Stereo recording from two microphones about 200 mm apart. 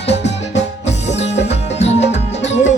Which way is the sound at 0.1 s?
60° left (ahead or behind).